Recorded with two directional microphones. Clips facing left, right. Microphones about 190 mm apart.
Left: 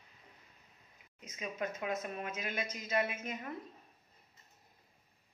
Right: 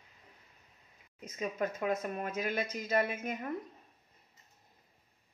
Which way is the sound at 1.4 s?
45° right (ahead or behind).